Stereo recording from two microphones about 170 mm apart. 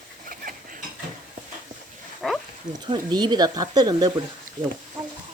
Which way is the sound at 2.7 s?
25° right (ahead or behind).